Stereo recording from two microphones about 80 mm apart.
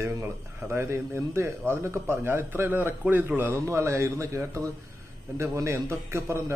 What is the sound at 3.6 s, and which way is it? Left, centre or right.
A man's voice, right.